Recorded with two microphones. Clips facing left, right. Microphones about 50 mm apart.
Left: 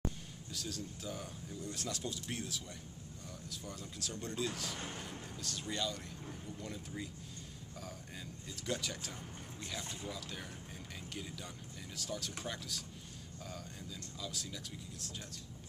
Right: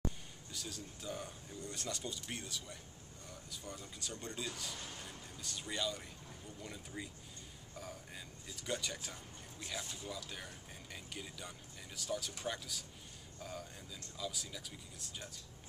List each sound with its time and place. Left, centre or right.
0.5 s speech: centre
4.7 s speech: left
5.4 s speech: centre
7.7 s a sound: centre
8.5 s a man's voice: centre